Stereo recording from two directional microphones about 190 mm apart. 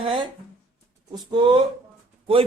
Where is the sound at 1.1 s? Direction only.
20° right (ahead or behind).